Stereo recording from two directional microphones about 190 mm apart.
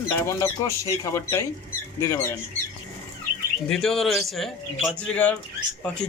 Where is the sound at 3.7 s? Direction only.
Centre (ahead or behind).